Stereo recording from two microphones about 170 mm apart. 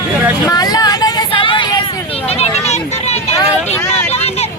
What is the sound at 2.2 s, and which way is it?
Hubbub, 40° left (ahead or behind).